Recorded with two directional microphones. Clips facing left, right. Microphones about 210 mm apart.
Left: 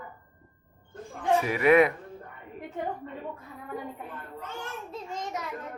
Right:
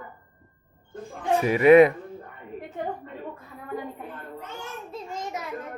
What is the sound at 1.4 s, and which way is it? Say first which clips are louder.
Speech: right 7 dB; 25° right (ahead or behind).